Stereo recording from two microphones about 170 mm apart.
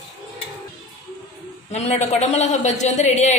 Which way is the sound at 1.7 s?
40° left (ahead or behind).